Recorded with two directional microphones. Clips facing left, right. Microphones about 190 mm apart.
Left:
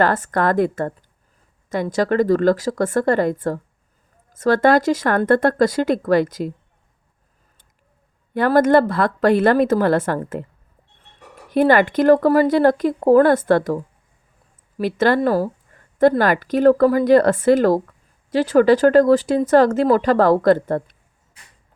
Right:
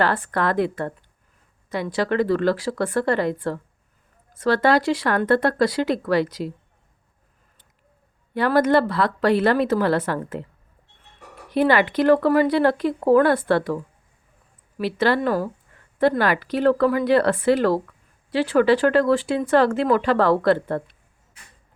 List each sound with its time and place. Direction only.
0.0 s speech: 45° left (ahead or behind)
8.3 s speech: 45° left (ahead or behind)
11.5 s speech: 45° left (ahead or behind)